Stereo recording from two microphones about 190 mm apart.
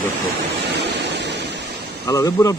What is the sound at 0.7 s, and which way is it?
Vehicle, 60° right (ahead or behind).